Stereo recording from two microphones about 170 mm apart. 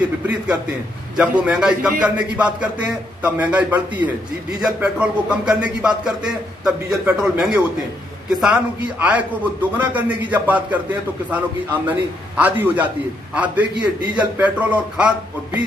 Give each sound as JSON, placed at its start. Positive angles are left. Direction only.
{"t": 1.1, "sound": "a man's voice", "side_deg": -5}